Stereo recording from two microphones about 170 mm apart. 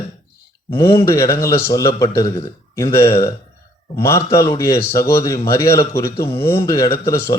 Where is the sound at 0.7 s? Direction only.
15° left (ahead or behind).